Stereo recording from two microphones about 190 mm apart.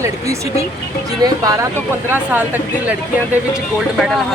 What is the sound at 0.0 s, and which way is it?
Speech, 15° right (ahead or behind).